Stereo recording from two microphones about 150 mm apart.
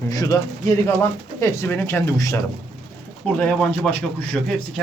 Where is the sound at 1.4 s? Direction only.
15° left (ahead or behind).